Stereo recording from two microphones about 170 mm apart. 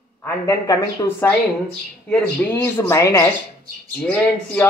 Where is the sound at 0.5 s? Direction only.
15° left (ahead or behind).